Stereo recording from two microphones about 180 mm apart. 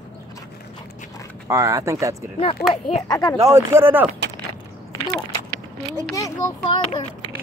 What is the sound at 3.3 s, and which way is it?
Speech, 15° right (ahead or behind).